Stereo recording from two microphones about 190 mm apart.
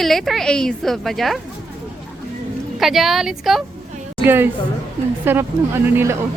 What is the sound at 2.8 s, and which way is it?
A woman's voice, centre (ahead or behind).